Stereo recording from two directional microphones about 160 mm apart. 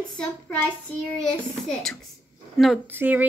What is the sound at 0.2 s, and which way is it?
Speech, 10° left (ahead or behind).